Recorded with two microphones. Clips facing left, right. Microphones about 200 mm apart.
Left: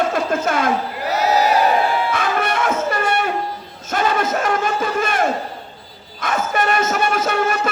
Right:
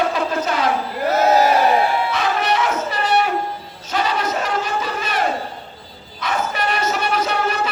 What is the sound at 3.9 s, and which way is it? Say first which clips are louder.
Battle cry: left 2 dB; 50° left (ahead or behind).